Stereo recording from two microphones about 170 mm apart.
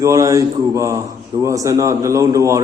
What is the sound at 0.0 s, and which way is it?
A man's voice, 20° right (ahead or behind).